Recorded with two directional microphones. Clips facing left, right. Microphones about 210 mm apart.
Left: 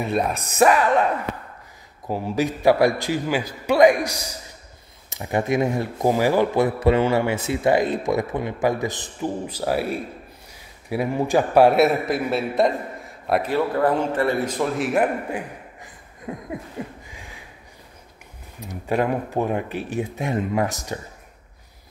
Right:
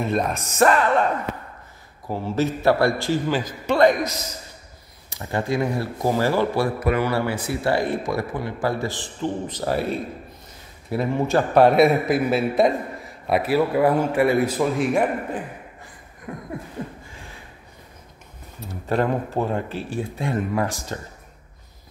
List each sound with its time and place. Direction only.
0.0 s a man's voice: 10° left (ahead or behind)
16.3 s speech: 20° left (ahead or behind)
16.8 s a sound: 10° left (ahead or behind)
18.6 s speech: 15° left (ahead or behind)